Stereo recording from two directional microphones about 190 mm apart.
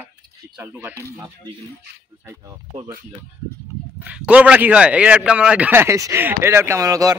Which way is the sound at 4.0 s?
5° right (ahead or behind).